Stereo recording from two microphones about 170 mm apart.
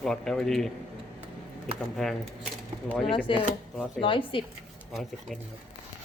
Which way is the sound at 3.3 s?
30° left (ahead or behind).